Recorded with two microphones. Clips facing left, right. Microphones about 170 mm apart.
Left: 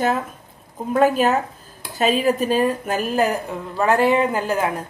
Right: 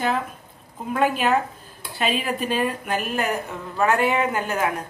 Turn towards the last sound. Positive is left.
turn(degrees=35)  # may be behind; listen again after turning